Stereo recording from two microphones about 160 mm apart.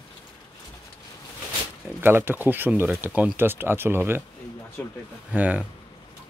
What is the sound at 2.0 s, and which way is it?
Speech, 15° right (ahead or behind).